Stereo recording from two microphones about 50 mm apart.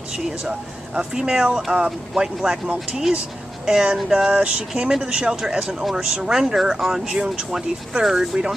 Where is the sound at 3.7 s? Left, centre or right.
Centre.